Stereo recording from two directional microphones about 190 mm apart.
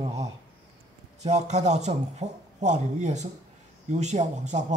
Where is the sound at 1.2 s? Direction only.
35° right (ahead or behind).